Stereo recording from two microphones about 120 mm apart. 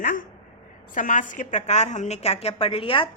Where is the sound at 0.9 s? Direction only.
90° left.